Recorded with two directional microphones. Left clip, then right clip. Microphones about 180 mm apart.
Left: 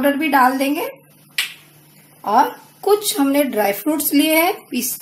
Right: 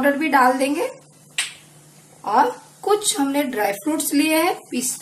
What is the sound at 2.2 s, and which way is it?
A woman's voice, 35° left (ahead or behind).